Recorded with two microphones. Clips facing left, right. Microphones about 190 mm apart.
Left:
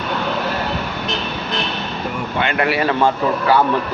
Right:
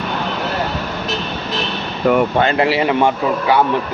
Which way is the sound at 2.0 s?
70° right (ahead or behind).